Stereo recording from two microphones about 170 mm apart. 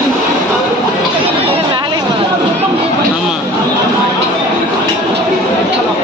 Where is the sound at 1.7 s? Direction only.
25° right (ahead or behind).